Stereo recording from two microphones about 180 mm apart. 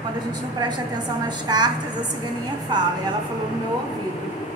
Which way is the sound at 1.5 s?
20° right (ahead or behind).